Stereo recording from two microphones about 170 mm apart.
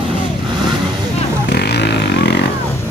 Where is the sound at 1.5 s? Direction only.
75° left (ahead or behind).